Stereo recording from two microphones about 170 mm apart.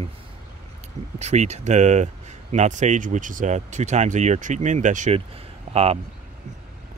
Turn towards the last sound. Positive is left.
turn(degrees=-40)  # may be behind; listen again after turning